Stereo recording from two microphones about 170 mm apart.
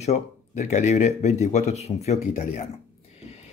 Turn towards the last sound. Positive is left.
turn(degrees=40)  # may be behind; listen again after turning